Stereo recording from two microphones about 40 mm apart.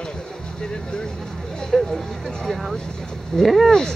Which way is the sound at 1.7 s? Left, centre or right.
Centre.